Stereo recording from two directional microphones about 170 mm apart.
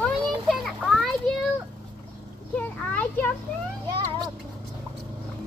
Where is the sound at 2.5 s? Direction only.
10° left (ahead or behind).